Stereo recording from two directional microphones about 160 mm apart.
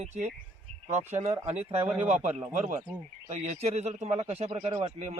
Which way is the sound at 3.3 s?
45° right (ahead or behind).